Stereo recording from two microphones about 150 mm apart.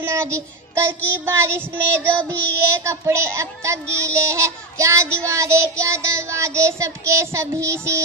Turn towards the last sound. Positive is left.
turn(degrees=-20)  # may be behind; listen again after turning